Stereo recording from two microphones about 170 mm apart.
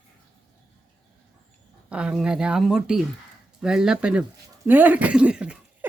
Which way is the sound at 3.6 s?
5° right (ahead or behind).